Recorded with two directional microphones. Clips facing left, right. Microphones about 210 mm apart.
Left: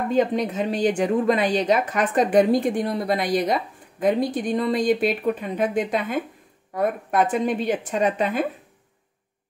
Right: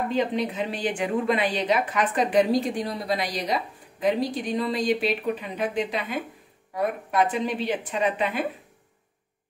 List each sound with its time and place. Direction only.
0.1 s a woman's voice: 45° left (ahead or behind)